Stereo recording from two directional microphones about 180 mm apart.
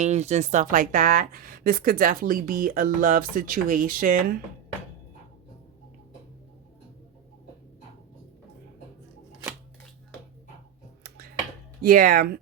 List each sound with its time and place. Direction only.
0.0 s speech: 40° right (ahead or behind)
11.8 s speech: 55° right (ahead or behind)